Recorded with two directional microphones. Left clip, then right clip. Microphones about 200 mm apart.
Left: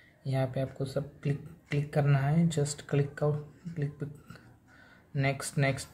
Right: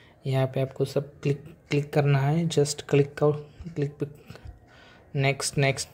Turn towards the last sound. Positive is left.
turn(degrees=-30)  # may be behind; listen again after turning